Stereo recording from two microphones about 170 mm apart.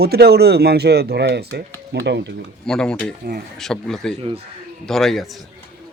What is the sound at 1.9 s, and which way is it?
Speech, 85° right.